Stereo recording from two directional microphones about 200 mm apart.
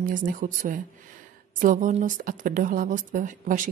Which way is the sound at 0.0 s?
40° right (ahead or behind).